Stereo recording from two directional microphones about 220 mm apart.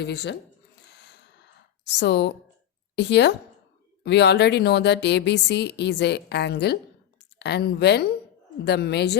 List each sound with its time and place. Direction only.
0.0 s speech: 50° left (ahead or behind)
0.9 s a sound: 50° left (ahead or behind)
2.9 s a woman's voice: 50° left (ahead or behind)